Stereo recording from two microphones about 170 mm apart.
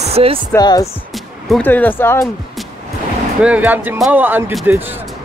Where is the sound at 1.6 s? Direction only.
10° left (ahead or behind).